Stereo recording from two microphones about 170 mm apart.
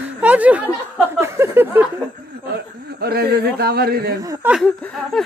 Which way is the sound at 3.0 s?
70° right (ahead or behind).